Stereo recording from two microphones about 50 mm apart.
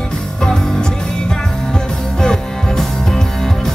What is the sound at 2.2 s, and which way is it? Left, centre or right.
Music, centre.